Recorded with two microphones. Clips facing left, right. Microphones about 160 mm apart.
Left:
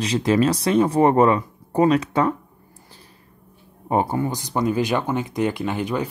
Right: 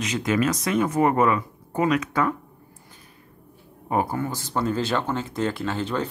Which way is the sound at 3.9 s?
25° left (ahead or behind).